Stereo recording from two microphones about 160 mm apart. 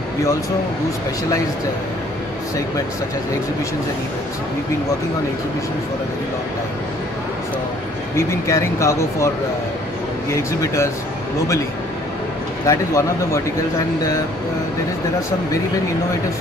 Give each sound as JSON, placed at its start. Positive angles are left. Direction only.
{"t": 8.5, "sound": "speech", "side_deg": 20}
{"t": 10.3, "sound": "speech", "side_deg": 20}
{"t": 12.6, "sound": "speech", "side_deg": 20}